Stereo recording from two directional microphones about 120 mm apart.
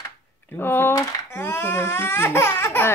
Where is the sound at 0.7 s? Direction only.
20° left (ahead or behind).